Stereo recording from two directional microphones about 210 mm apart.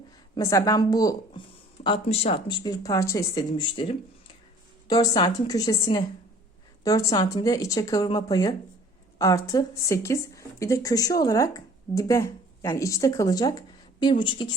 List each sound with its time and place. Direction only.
0.3 s speech: 15° left (ahead or behind)